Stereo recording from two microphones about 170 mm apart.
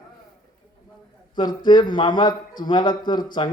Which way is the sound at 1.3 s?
25° left (ahead or behind).